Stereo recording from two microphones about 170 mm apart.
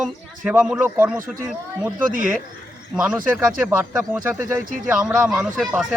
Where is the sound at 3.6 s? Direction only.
15° right (ahead or behind).